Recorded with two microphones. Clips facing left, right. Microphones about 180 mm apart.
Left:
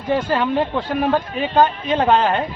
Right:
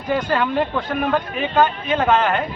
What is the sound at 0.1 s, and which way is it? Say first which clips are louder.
Speech: left 1 dB; 25° left (ahead or behind).